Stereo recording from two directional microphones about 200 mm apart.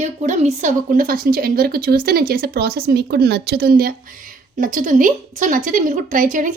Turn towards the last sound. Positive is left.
turn(degrees=-40)  # may be behind; listen again after turning